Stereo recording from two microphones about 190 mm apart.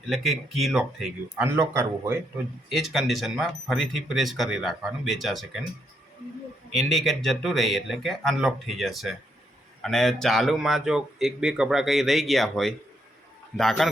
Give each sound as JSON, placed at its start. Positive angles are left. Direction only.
{"t": 0.1, "sound": "a man's voice", "side_deg": 0}
{"t": 1.5, "sound": "speech", "side_deg": -15}
{"t": 2.6, "sound": "a man's voice", "side_deg": 0}
{"t": 6.7, "sound": "a man's voice", "side_deg": 0}